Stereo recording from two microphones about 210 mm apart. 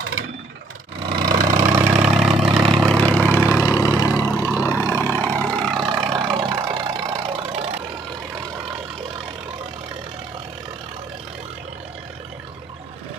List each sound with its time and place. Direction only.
0.0 s vehicle: 90° right
1.0 s a sound: 20° right (ahead or behind)
1.5 s vehicle: 10° right (ahead or behind)
6.1 s vehicle: 25° right (ahead or behind)